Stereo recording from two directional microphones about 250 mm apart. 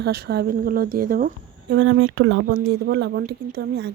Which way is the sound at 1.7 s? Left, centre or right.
Right.